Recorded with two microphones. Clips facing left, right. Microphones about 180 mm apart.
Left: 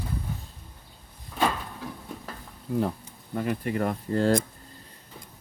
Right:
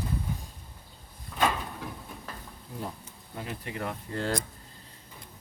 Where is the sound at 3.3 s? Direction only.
50° left (ahead or behind).